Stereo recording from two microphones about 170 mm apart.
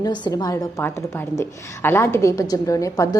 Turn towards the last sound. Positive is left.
turn(degrees=20)  # may be behind; listen again after turning